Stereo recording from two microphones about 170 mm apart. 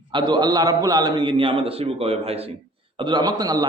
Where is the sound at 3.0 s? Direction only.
25° right (ahead or behind).